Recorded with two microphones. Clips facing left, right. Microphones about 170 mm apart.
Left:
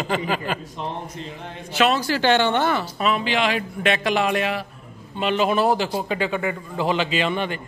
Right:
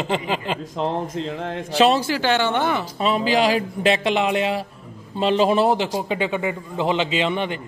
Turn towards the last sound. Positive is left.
turn(degrees=-20)  # may be behind; listen again after turning